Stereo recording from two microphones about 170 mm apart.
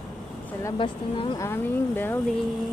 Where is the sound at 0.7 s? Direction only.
30° left (ahead or behind).